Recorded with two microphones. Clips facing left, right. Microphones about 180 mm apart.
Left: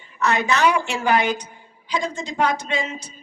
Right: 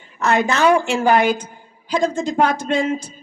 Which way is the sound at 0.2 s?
50° right (ahead or behind).